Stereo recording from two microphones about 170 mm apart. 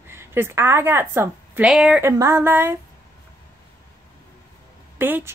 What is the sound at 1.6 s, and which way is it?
A woman's voice, 5° right (ahead or behind).